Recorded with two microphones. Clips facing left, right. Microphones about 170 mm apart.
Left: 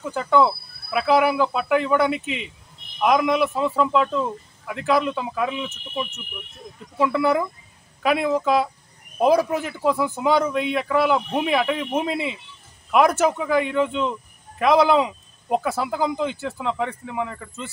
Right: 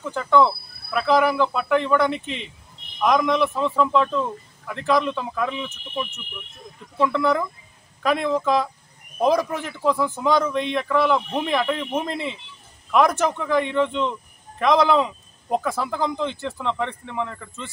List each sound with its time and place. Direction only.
0.0 s a man's voice: 10° left (ahead or behind)